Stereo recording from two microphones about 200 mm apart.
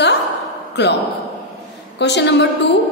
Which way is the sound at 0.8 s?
60° left (ahead or behind).